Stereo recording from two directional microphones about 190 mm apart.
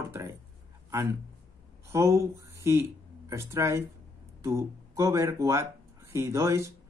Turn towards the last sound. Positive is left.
turn(degrees=-15)  # may be behind; listen again after turning